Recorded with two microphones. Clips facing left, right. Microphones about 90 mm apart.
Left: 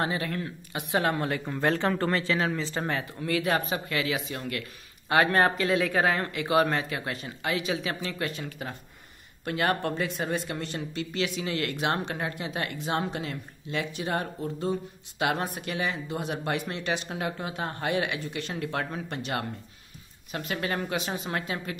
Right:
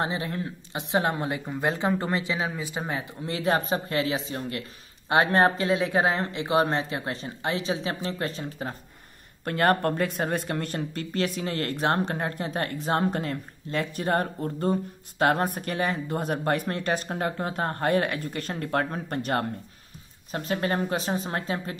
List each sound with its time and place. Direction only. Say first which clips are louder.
0.0 s speech: right 1 dB; 25° right (ahead or behind)
9.4 s speech: right 4 dB; 45° right (ahead or behind)